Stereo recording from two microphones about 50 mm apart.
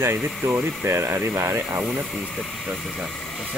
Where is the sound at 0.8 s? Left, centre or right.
Right.